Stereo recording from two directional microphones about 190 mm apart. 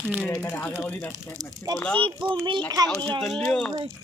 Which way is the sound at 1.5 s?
20° right (ahead or behind).